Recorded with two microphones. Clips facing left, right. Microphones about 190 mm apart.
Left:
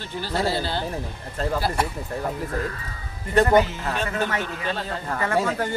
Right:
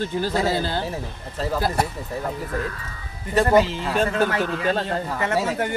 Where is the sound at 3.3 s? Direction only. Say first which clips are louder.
Left 1 dB; 5° right (ahead or behind).